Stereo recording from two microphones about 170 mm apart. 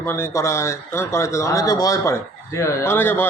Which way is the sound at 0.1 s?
15° left (ahead or behind).